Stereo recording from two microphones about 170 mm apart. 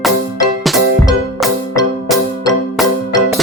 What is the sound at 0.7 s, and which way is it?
Music, centre (ahead or behind).